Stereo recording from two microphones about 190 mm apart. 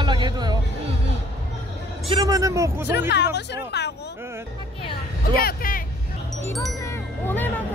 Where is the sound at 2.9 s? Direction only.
65° left (ahead or behind).